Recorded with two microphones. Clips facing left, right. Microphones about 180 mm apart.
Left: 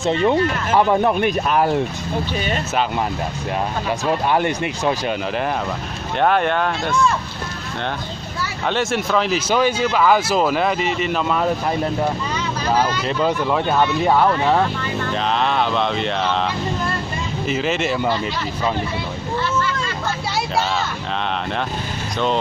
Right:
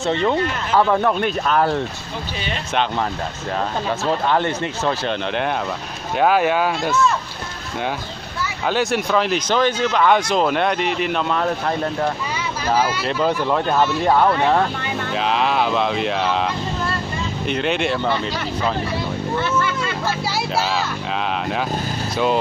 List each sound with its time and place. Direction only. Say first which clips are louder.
0.0 s speech: left 2 dB; 15° left (ahead or behind)
4.0 s speech: left 1 dB; 15° left (ahead or behind)
6.1 s speech: right 1 dB; 5° right (ahead or behind)
8.6 s speech: right 1 dB; centre (ahead or behind)
12.7 s speech: even; centre (ahead or behind)
17.5 s speech: even; centre (ahead or behind)